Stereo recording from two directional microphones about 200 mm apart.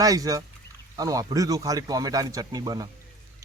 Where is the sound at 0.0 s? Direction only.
15° right (ahead or behind).